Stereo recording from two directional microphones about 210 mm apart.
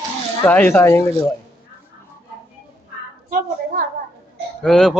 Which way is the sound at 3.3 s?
40° right (ahead or behind).